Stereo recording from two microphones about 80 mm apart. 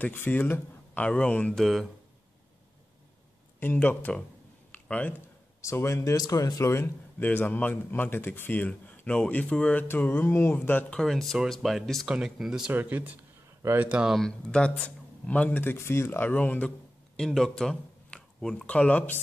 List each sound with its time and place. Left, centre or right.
0.0 s a man's voice: left
1.6 s speech: centre
3.5 s a man's voice: left
4.7 s a sound: centre
5.6 s speech: left
6.1 s a man's voice: left; by 9.8 s centre
9.8 s a man's voice: left
10.9 s speech: centre
12.7 s speech: right
14.1 s a man's voice: centre
17.2 s speech: centre